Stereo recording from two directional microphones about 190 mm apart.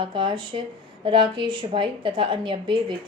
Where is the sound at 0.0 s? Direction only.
25° right (ahead or behind).